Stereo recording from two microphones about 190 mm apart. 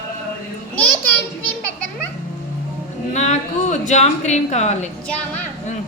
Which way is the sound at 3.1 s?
35° left (ahead or behind).